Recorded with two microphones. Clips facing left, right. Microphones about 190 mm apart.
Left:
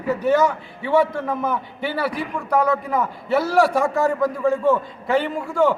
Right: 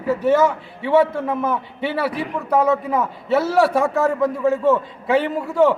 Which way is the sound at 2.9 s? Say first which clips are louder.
Right 1 dB; centre (ahead or behind).